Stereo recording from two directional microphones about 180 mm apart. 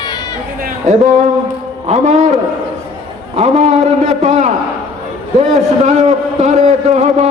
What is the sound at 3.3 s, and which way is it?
A man's voice, 40° right (ahead or behind).